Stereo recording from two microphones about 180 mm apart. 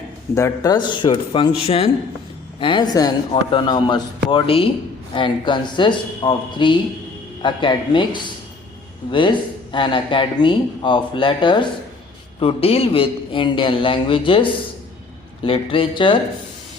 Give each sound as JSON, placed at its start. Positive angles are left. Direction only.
{"t": 0.3, "sound": "a man's voice", "side_deg": 20}